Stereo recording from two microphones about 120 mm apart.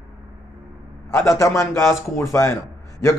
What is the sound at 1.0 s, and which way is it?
Speech, 25° left (ahead or behind).